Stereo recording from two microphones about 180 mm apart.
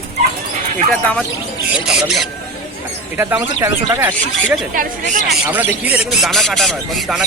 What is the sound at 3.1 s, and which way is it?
Speech, 15° right (ahead or behind).